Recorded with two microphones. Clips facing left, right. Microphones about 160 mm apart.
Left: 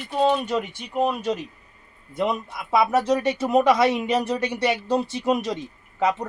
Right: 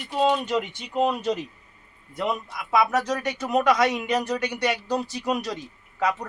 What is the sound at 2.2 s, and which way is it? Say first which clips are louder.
Speech: left 3 dB; 20° left (ahead or behind).